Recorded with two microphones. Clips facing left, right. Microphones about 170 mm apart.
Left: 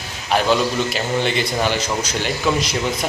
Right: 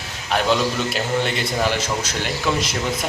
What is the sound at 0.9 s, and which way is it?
A man's voice, centre (ahead or behind).